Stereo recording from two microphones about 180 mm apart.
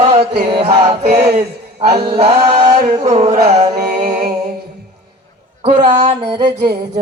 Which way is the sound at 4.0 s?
55° right (ahead or behind).